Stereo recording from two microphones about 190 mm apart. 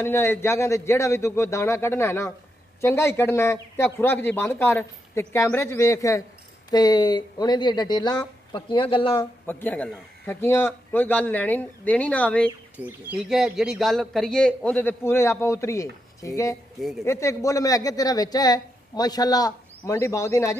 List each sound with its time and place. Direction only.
0.0 s a man's voice: 15° left (ahead or behind); by 9.2 s 30° left (ahead or behind)
9.5 s a man's voice: 10° left (ahead or behind)
12.7 s speech: 5° right (ahead or behind); by 20.5 s 15° left (ahead or behind)